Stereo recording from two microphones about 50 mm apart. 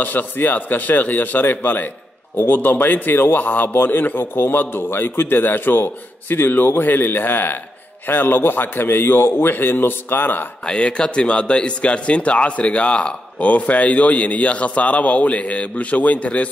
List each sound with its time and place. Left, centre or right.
0.0 s a man's voice: left
10.7 s a man's voice: centre